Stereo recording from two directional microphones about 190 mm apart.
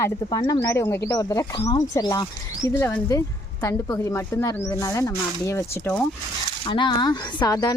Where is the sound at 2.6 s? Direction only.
10° left (ahead or behind).